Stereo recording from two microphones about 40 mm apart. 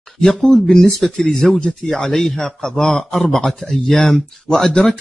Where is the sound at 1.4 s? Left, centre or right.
Left.